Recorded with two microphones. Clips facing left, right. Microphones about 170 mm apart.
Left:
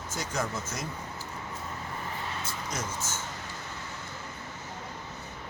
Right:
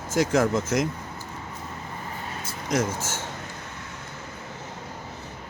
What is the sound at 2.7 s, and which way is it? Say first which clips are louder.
Speech: right 12 dB; 90° right.